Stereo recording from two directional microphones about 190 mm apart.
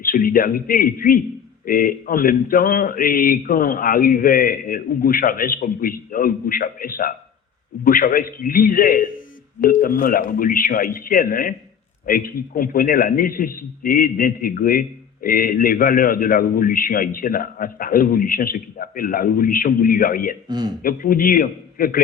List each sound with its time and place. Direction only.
0.0 s a man's voice: 50° left (ahead or behind)